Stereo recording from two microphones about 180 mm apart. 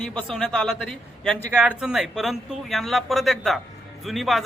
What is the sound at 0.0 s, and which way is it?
Speech, 5° left (ahead or behind).